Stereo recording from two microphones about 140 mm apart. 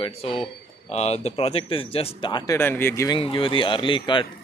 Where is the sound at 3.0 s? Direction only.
40° left (ahead or behind).